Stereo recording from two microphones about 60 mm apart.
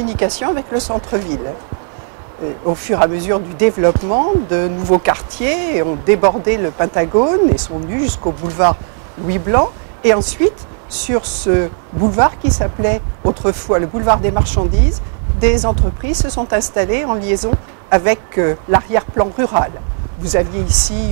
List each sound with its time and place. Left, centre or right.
0.0 s speech: centre